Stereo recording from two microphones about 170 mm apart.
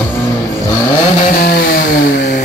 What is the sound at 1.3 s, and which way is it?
Chainsaw, 65° left (ahead or behind).